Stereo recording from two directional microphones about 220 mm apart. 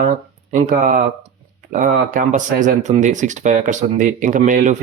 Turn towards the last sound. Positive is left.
turn(degrees=-35)  # may be behind; listen again after turning